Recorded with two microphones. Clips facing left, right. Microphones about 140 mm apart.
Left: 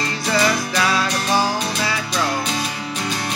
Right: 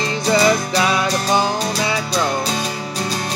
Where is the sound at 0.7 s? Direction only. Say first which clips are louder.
Right 2 dB; 20° right (ahead or behind).